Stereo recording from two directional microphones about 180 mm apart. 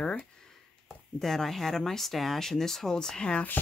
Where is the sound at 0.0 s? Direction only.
5° left (ahead or behind).